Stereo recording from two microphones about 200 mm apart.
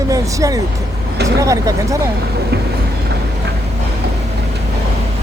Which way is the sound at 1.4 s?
15° right (ahead or behind).